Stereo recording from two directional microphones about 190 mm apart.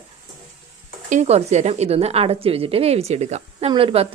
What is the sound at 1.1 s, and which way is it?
A woman's voice, 35° right (ahead or behind).